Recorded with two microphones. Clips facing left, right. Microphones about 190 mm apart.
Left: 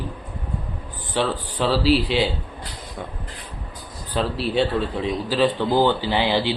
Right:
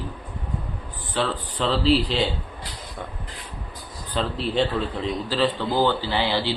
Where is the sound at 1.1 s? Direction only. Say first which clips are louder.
Left 3 dB; 10° left (ahead or behind).